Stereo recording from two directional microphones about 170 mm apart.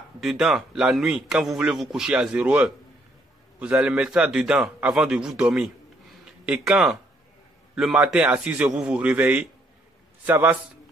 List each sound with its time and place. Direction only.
0.2 s a man's voice: centre (ahead or behind)